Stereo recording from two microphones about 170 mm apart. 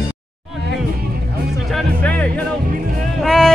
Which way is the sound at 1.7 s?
10° left (ahead or behind).